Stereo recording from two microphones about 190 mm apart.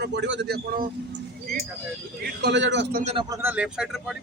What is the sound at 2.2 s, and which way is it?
Speech, 65° right (ahead or behind).